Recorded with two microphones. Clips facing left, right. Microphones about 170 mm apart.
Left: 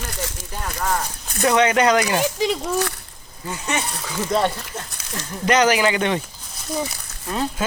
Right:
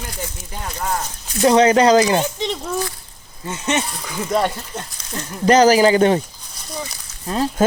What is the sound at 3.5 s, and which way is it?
Speech, 20° right (ahead or behind).